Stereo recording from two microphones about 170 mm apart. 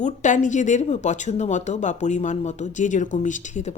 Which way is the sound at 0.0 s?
45° left (ahead or behind).